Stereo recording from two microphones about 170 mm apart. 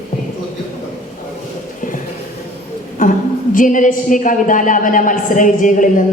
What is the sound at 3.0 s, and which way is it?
A woman's voice, 50° left (ahead or behind).